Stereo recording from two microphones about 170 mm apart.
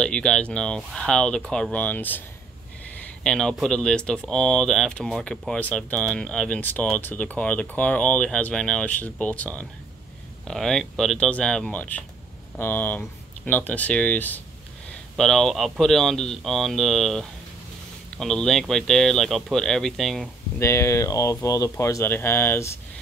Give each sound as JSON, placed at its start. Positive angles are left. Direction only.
{"t": 0.0, "sound": "speech", "side_deg": 5}
{"t": 20.5, "sound": "speech", "side_deg": 15}